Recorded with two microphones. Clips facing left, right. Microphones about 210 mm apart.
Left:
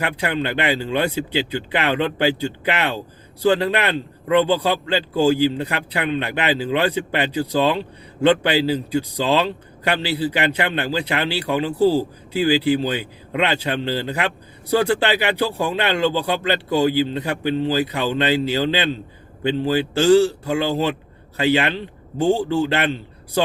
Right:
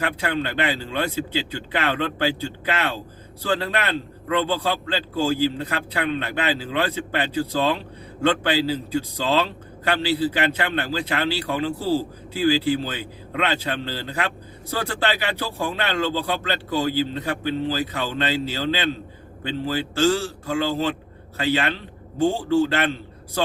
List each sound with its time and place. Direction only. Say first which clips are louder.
0.0 s a man's voice: left 2 dB; 15° left (ahead or behind)